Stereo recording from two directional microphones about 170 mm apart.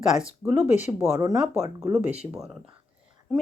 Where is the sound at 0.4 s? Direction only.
15° right (ahead or behind).